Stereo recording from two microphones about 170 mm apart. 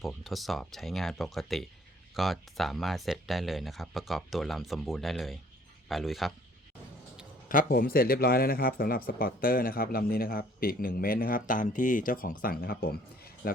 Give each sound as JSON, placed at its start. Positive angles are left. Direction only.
{"t": 0.0, "sound": "speech", "side_deg": 0}
{"t": 7.4, "sound": "a man's voice", "side_deg": 60}